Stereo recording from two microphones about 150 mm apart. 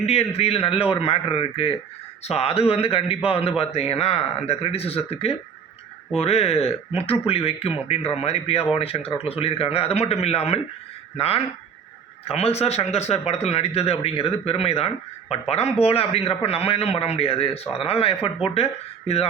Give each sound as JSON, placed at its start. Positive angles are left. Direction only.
{"t": 0.0, "sound": "speech", "side_deg": 45}